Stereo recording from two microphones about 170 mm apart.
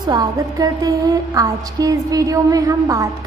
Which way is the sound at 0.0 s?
25° right (ahead or behind).